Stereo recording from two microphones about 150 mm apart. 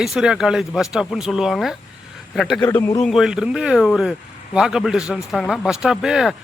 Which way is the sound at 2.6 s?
15° left (ahead or behind).